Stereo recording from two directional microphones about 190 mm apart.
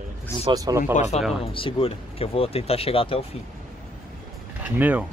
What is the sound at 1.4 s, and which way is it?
Speech, 25° left (ahead or behind).